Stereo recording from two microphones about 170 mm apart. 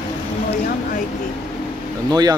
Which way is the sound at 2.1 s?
25° right (ahead or behind).